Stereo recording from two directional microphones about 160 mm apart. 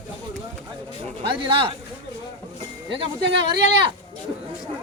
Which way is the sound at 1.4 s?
35° right (ahead or behind).